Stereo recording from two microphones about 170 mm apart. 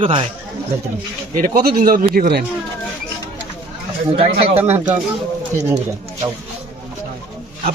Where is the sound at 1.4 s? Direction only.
55° right (ahead or behind).